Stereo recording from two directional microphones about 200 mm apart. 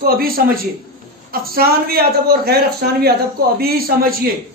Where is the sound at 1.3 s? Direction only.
50° right (ahead or behind).